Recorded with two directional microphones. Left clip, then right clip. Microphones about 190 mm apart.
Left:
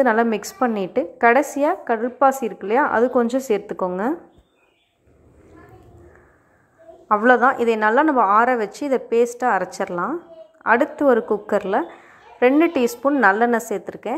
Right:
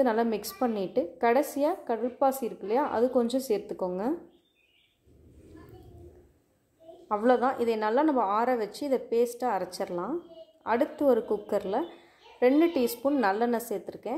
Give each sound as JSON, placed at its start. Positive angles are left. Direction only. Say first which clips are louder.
{"t": 0.0, "sound": "a woman's voice", "louder": "left 9 dB", "side_deg": 5}
{"t": 7.1, "sound": "a woman's voice", "louder": "left 10 dB", "side_deg": 10}